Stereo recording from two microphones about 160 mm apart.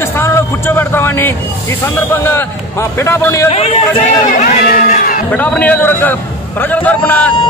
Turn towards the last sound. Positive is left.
turn(degrees=10)  # may be behind; listen again after turning